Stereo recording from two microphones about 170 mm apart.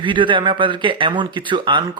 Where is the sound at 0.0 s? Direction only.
30° right (ahead or behind).